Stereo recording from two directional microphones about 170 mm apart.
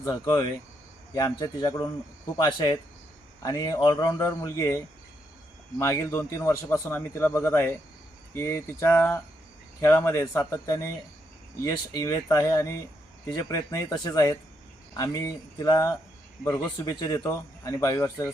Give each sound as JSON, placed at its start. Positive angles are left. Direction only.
{"t": 0.0, "sound": "a man's voice", "side_deg": 20}
{"t": 5.8, "sound": "a man's voice", "side_deg": 15}